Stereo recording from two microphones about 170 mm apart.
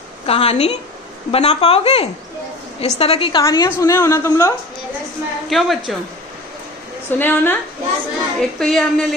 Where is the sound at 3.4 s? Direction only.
20° left (ahead or behind).